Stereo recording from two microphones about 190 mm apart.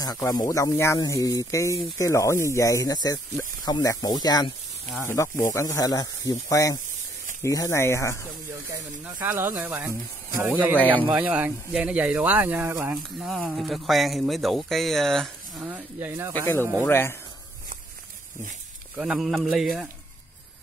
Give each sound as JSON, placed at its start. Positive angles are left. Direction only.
{"t": 0.3, "sound": "speech", "side_deg": 20}
{"t": 8.6, "sound": "speech", "side_deg": -10}
{"t": 15.6, "sound": "speech", "side_deg": -10}
{"t": 16.8, "sound": "speech", "side_deg": 10}
{"t": 18.9, "sound": "speech", "side_deg": -5}